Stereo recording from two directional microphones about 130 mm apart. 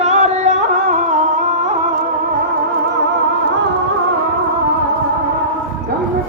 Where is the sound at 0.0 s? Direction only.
60° right (ahead or behind); by 1.2 s 75° right (ahead or behind).